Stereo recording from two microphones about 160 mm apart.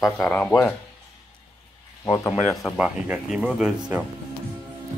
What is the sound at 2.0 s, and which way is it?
Speech, 20° left (ahead or behind).